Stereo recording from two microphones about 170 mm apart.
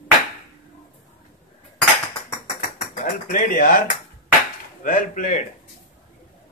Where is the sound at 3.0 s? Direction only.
50° left (ahead or behind).